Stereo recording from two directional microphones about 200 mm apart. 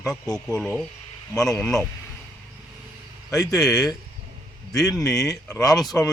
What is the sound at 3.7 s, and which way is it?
Speech, 20° left (ahead or behind).